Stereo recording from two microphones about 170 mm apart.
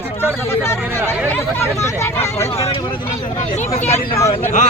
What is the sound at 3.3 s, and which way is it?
A man's voice, 40° left (ahead or behind).